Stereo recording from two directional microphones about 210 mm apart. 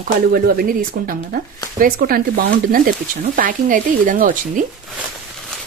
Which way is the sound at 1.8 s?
40° right (ahead or behind).